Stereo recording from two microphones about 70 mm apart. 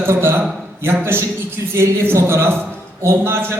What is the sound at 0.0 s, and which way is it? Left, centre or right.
A man's voice, right.